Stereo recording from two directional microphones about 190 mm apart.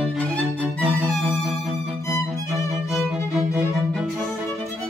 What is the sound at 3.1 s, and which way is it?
Music, 15° left (ahead or behind).